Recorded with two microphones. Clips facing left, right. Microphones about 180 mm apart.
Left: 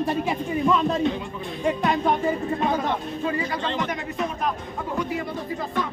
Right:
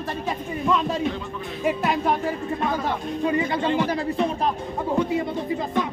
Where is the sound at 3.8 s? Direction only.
30° right (ahead or behind).